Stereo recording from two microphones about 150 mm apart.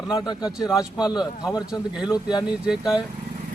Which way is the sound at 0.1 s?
30° left (ahead or behind).